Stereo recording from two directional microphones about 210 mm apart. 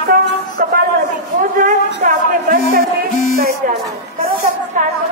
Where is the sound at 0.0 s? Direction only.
45° right (ahead or behind).